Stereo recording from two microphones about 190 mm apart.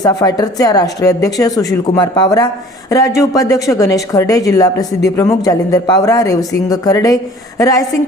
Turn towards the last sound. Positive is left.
turn(degrees=20)  # may be behind; listen again after turning